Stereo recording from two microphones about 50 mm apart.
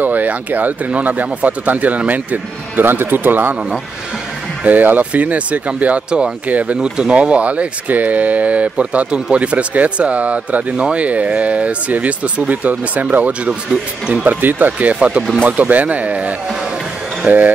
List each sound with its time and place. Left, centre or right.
0.0 s speech: right
4.6 s speech: right
6.8 s speech: centre
13.5 s speech: centre
14.2 s speech: right
15.4 s speech: right